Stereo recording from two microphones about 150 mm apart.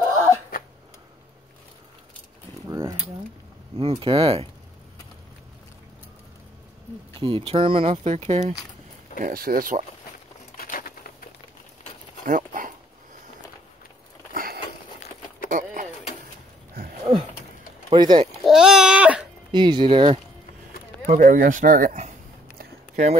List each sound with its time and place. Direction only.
2.7 s a sound: 20° right (ahead or behind)
3.8 s speech: 35° right (ahead or behind)
7.2 s speech: 35° right (ahead or behind)
9.2 s speech: 75° right (ahead or behind)
10.6 s a sound: 75° left (ahead or behind)
12.3 s dog: 60° right (ahead or behind)
14.3 s a sound: 75° right (ahead or behind)
15.5 s a sound: 65° right (ahead or behind)
16.7 s sniff: 75° right (ahead or behind)
17.8 s speech: 30° right (ahead or behind)
18.4 s babbling: 5° right (ahead or behind)
19.5 s speech: 30° right (ahead or behind)
21.1 s speech: 65° right (ahead or behind)